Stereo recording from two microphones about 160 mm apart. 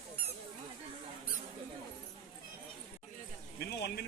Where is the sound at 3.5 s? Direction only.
85° left.